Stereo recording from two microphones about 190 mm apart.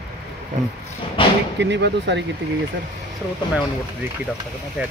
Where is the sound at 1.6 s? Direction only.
65° right (ahead or behind).